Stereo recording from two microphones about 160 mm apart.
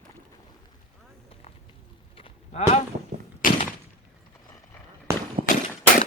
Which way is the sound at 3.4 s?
60° left (ahead or behind).